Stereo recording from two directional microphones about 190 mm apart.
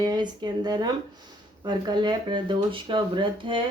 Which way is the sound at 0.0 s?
20° right (ahead or behind).